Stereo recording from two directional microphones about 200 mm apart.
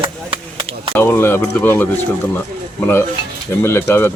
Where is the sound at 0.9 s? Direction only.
10° left (ahead or behind).